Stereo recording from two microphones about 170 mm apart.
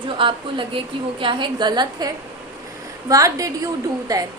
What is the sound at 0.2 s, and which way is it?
A woman's voice, 30° right (ahead or behind).